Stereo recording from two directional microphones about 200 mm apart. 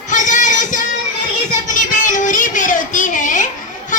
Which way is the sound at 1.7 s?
40° left (ahead or behind).